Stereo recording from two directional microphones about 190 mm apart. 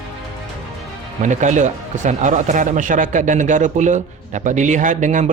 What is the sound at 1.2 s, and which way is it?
Speech, 40° right (ahead or behind).